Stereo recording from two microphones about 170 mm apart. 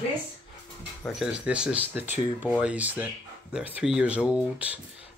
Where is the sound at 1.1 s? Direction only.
5° right (ahead or behind).